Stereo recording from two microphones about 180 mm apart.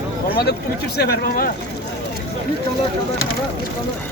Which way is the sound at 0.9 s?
60° left (ahead or behind).